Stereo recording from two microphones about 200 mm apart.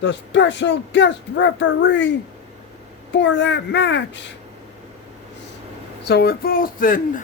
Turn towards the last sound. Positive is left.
turn(degrees=45)  # may be behind; listen again after turning